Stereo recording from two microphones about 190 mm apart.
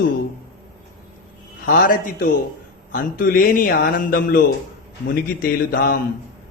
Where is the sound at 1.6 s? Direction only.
50° left (ahead or behind).